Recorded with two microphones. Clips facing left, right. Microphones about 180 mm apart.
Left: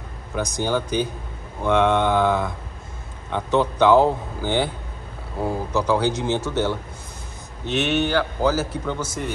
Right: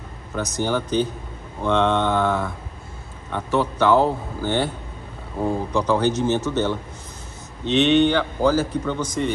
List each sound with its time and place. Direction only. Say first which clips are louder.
0.4 s speech: even; 15° left (ahead or behind)